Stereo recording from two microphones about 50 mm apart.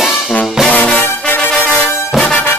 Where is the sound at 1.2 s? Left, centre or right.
Left.